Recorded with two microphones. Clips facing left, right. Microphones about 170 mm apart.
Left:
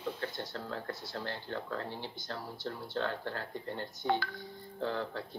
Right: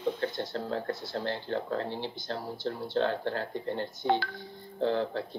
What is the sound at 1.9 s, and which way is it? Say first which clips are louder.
Speech: right 6 dB; 90° right.